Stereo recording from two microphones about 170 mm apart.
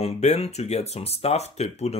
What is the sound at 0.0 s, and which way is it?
Speech, 40° left (ahead or behind).